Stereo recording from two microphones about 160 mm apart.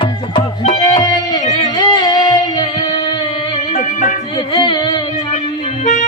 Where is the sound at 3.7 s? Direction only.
50° left (ahead or behind).